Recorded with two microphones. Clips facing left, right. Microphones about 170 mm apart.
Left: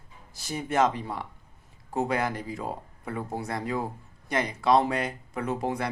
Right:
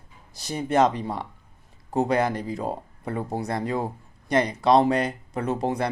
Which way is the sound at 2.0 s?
20° right (ahead or behind).